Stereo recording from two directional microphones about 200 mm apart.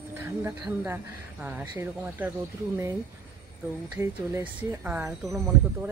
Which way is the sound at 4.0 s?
10° right (ahead or behind).